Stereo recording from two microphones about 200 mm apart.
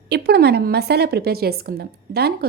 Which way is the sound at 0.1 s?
55° right (ahead or behind).